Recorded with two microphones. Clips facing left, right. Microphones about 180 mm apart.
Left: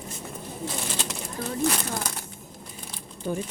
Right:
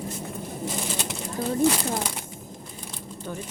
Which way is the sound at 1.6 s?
10° right (ahead or behind).